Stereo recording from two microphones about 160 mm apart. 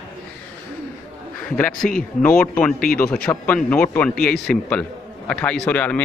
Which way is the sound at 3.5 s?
10° left (ahead or behind).